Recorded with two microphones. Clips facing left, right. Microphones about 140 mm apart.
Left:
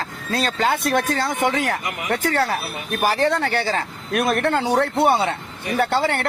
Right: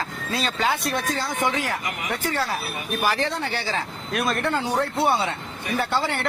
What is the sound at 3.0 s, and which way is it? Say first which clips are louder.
Speech: left 5 dB; 45° left (ahead or behind).